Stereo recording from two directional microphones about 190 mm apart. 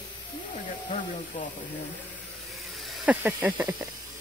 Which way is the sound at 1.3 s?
40° left (ahead or behind).